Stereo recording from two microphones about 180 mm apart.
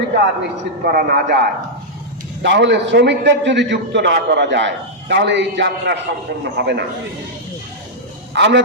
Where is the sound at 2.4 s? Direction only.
75° right (ahead or behind).